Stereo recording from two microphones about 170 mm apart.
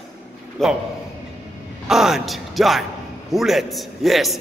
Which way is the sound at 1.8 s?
Centre (ahead or behind).